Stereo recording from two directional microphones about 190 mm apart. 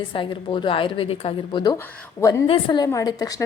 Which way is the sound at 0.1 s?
25° left (ahead or behind).